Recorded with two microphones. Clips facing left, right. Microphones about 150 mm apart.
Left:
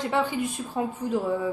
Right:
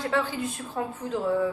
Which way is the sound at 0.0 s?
20° left (ahead or behind).